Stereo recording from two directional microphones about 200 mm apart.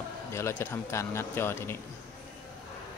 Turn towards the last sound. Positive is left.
turn(degrees=10)  # may be behind; listen again after turning